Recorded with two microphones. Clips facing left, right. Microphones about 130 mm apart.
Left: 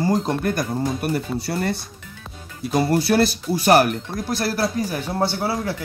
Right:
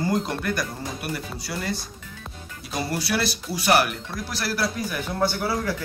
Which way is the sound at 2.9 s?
50° left (ahead or behind).